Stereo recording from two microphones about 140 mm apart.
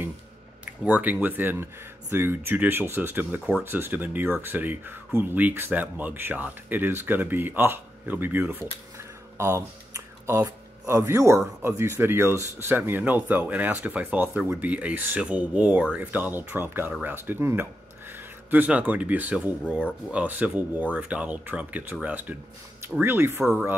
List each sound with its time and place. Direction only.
0.8 s speech: 10° right (ahead or behind)